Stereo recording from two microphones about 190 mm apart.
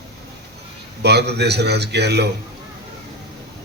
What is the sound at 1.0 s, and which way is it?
A man's voice, 60° right (ahead or behind).